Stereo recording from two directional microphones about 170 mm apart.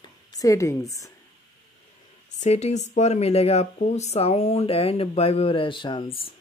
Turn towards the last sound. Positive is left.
turn(degrees=30)  # may be behind; listen again after turning